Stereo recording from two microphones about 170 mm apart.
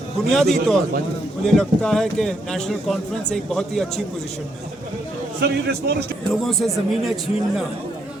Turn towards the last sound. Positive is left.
turn(degrees=0)  # may be behind; listen again after turning